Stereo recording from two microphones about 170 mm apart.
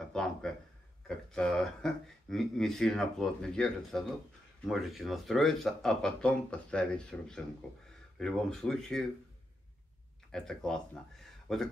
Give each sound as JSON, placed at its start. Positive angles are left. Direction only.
{"t": 0.1, "sound": "a sound", "side_deg": 5}
{"t": 1.0, "sound": "speech", "side_deg": 5}
{"t": 10.3, "sound": "speech", "side_deg": 5}